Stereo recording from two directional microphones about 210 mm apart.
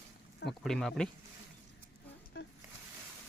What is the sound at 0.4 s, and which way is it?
Speech, centre (ahead or behind).